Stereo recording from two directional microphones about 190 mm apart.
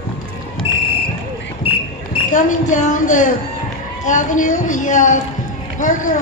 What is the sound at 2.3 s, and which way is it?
Speech, 40° left (ahead or behind).